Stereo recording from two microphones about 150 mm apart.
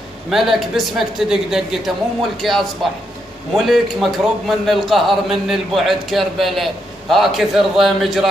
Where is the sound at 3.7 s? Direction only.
Centre (ahead or behind).